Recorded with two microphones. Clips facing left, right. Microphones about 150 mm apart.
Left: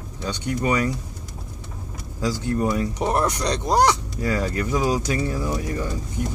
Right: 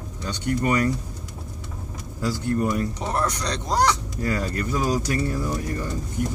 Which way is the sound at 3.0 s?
15° left (ahead or behind).